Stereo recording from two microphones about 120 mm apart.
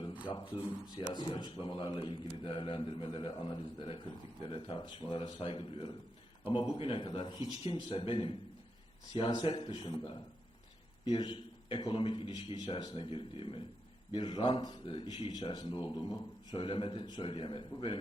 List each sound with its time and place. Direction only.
0.3 s a man's voice: 45° left (ahead or behind)